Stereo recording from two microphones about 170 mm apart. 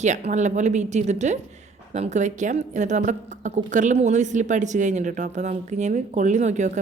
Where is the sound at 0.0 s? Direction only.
45° right (ahead or behind).